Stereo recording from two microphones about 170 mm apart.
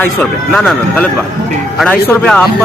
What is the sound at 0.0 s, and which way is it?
Speech, 10° left (ahead or behind).